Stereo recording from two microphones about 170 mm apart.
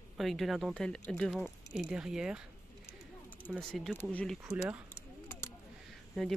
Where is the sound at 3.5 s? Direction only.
Centre (ahead or behind).